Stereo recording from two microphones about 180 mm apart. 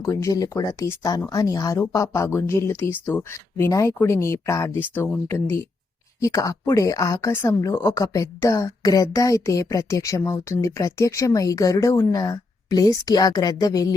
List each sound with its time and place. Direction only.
0.0 s speech: 15° left (ahead or behind)